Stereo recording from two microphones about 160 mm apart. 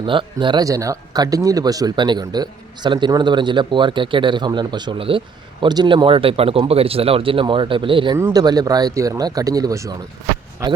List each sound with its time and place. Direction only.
0.0 s speech: 30° right (ahead or behind)